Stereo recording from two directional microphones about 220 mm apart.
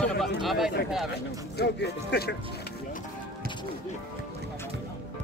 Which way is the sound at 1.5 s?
50° left (ahead or behind).